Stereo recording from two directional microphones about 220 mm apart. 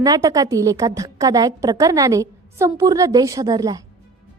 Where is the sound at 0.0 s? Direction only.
15° right (ahead or behind).